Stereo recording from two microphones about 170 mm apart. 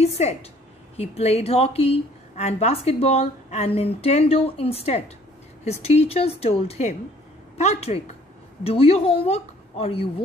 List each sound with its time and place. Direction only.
0.0 s a woman's voice: 40° left (ahead or behind)